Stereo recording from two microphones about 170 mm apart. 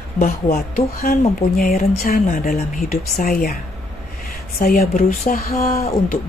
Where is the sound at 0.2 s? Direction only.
55° left (ahead or behind).